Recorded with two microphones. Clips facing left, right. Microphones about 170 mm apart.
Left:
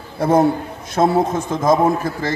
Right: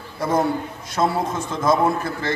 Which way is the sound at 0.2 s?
55° left (ahead or behind).